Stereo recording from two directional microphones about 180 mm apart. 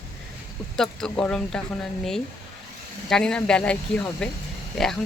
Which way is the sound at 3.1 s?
5° left (ahead or behind).